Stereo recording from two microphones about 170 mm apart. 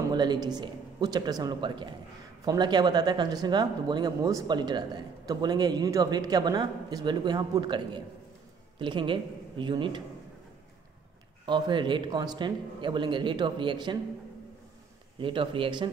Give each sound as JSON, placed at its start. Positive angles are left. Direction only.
{"t": 0.1, "sound": "speech", "side_deg": -25}
{"t": 11.4, "sound": "speech", "side_deg": -25}
{"t": 15.1, "sound": "speech", "side_deg": -30}